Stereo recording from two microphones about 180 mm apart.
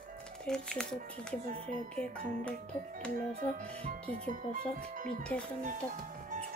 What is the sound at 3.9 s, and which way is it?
Speech, 50° right (ahead or behind).